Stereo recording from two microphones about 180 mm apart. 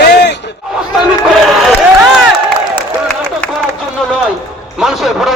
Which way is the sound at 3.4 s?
5° left (ahead or behind).